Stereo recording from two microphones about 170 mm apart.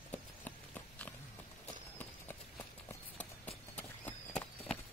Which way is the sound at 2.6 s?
10° left (ahead or behind).